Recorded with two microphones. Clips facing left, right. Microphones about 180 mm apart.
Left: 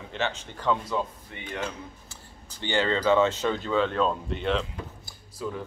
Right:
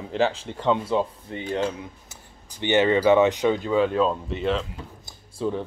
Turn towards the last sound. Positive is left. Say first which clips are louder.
# right 7 dB
turn(degrees=-30)  # may be behind; listen again after turning